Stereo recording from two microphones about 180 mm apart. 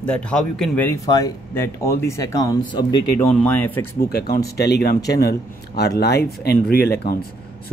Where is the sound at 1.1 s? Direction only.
20° left (ahead or behind).